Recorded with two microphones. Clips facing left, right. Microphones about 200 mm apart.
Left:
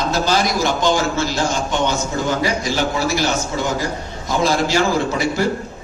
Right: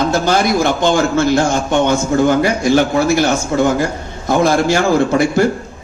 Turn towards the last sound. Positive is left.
turn(degrees=-55)  # may be behind; listen again after turning